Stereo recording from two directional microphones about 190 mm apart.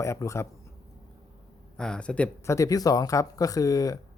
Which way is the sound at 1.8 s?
5° left (ahead or behind).